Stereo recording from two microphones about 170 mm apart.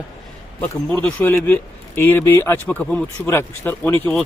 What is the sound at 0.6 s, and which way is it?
Speech, 5° left (ahead or behind).